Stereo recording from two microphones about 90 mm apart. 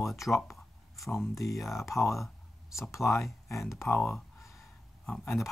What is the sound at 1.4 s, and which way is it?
Speech, centre (ahead or behind).